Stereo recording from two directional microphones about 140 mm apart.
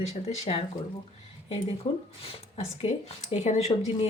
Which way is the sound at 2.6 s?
50° left (ahead or behind).